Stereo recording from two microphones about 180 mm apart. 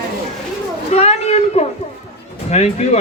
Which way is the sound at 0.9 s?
35° left (ahead or behind).